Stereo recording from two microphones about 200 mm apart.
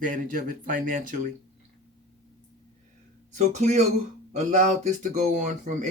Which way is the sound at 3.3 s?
35° right (ahead or behind).